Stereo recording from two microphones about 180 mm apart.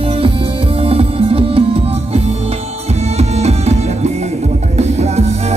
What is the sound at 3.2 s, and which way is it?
Music, 35° right (ahead or behind).